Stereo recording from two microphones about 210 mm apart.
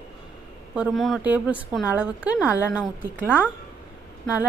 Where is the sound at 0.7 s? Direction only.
Centre (ahead or behind).